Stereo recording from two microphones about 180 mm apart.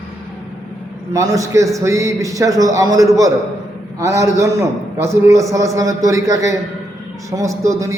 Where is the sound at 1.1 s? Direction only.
20° right (ahead or behind).